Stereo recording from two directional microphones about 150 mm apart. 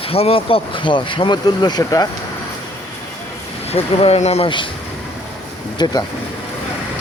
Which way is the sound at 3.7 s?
45° left (ahead or behind).